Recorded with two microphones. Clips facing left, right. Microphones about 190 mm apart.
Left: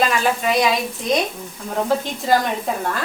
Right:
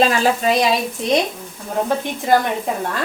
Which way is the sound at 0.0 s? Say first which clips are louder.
Right 3 dB; 30° right (ahead or behind).